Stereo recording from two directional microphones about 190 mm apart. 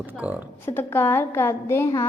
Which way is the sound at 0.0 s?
10° right (ahead or behind).